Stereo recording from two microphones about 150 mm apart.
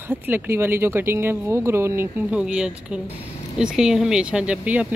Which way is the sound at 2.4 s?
5° right (ahead or behind).